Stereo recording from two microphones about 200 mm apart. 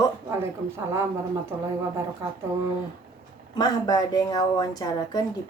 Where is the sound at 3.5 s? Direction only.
20° left (ahead or behind).